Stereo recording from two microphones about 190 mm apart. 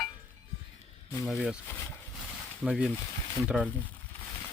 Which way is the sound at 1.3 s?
Centre (ahead or behind).